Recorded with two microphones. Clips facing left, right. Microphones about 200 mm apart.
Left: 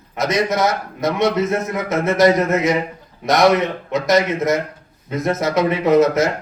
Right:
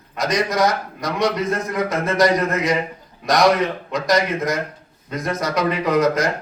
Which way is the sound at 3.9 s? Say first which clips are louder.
Left 4 dB; 25° left (ahead or behind).